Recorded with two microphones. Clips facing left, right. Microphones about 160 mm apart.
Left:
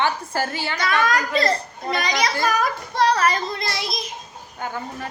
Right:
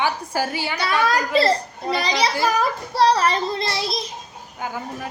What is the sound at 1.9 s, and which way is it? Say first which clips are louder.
Child singing: right 1 dB; 30° right (ahead or behind).